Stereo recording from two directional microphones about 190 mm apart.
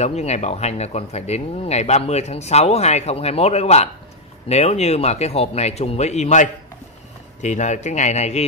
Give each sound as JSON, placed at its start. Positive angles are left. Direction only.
{"t": 0.0, "sound": "speech", "side_deg": 35}